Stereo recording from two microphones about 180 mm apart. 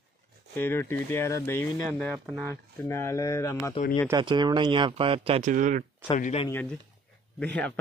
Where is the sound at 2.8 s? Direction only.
15° left (ahead or behind).